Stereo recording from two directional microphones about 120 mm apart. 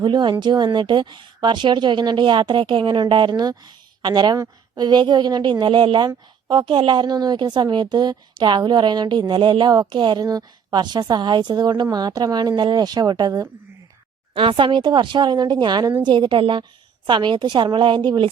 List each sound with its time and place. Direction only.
0.0 s a woman's voice: 40° right (ahead or behind)
14.3 s a woman's voice: 45° right (ahead or behind)